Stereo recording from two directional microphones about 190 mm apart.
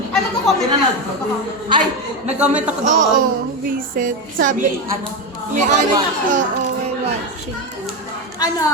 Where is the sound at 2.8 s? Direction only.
45° right (ahead or behind).